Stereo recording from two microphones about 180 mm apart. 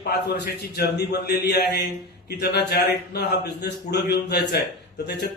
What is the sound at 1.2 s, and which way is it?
Speech, 65° left (ahead or behind).